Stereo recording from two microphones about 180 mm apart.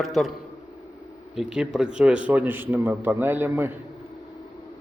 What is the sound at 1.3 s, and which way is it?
A man's voice, 5° right (ahead or behind).